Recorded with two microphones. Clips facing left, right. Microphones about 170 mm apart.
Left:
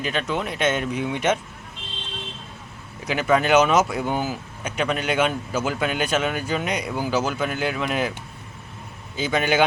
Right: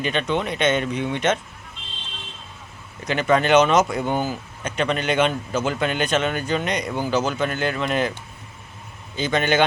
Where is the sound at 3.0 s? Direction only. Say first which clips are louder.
Right 1 dB; 5° left (ahead or behind).